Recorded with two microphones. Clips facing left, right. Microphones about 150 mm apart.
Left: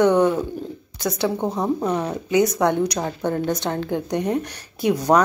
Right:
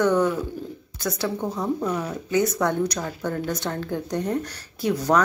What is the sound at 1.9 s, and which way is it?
Speech, 65° left (ahead or behind).